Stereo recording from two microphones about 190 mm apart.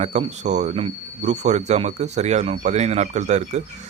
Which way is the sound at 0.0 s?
35° right (ahead or behind).